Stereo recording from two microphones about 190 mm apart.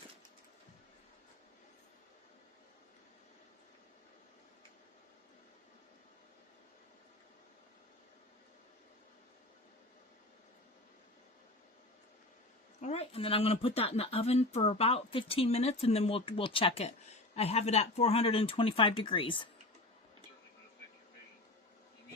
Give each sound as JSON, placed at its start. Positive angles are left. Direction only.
{"t": 12.8, "sound": "speech", "side_deg": 35}